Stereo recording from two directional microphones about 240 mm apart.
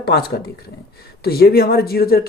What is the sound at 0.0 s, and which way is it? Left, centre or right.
Speech, left.